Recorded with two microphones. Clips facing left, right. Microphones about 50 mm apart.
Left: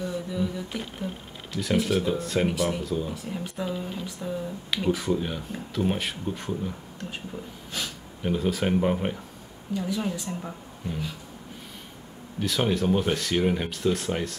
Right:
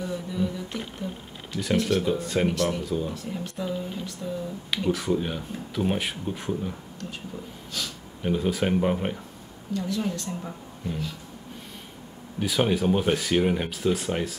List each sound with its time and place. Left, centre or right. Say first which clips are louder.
0.0 s a sound: even; centre
1.5 s speech: even; centre
2.9 s speech: right 1 dB; centre
3.3 s speech: even; centre
7.8 s speech: even; left
8.2 s speech: right 1 dB; centre
9.8 s speech: even; centre
12.4 s speech: right 1 dB; centre